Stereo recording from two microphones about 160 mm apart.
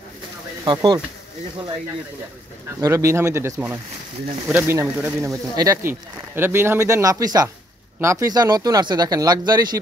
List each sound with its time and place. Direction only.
0.7 s speech: 30° right (ahead or behind)
2.8 s speech: 20° right (ahead or behind)